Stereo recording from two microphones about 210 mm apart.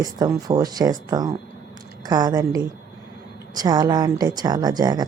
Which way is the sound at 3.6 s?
20° right (ahead or behind).